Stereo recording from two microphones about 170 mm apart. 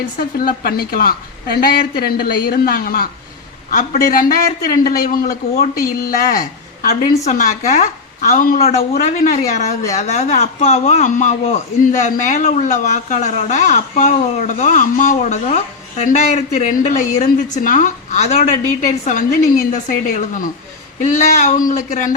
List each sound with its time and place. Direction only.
0.2 s a woman's voice: 60° left (ahead or behind)